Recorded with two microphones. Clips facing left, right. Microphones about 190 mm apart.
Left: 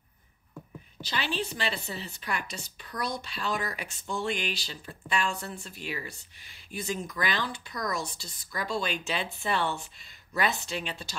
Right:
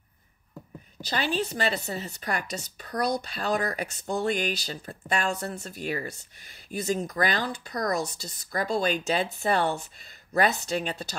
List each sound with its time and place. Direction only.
1.0 s a woman's voice: 45° right (ahead or behind)